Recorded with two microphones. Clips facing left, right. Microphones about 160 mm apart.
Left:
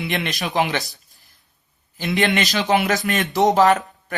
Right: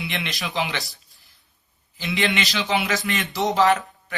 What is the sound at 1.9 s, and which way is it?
Speech, 45° left (ahead or behind).